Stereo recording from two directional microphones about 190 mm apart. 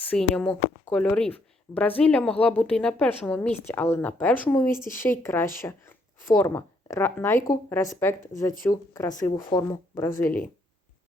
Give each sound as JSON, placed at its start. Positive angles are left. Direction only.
{"t": 0.0, "sound": "speech", "side_deg": 5}
{"t": 10.2, "sound": "speech", "side_deg": 10}